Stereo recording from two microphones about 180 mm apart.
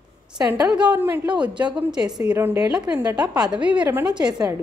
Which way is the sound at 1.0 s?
10° right (ahead or behind).